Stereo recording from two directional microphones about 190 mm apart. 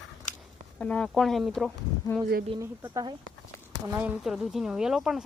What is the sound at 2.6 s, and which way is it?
Speech, 15° right (ahead or behind).